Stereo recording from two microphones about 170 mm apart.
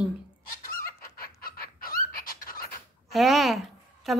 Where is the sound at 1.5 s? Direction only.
60° left (ahead or behind).